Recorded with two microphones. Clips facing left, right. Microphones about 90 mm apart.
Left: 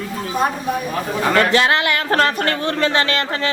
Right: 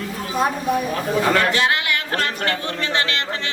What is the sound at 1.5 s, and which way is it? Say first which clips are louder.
Speech: left 4 dB; 90° left.